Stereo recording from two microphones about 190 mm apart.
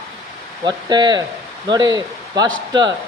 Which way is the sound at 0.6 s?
20° right (ahead or behind).